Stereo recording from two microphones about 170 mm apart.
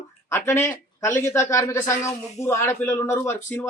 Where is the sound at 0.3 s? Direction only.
15° left (ahead or behind).